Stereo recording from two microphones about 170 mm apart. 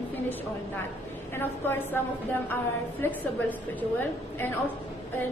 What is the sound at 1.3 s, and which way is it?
Speech, 15° left (ahead or behind).